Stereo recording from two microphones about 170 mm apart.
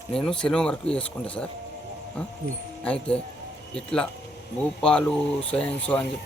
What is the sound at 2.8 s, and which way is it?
Speech, 5° left (ahead or behind).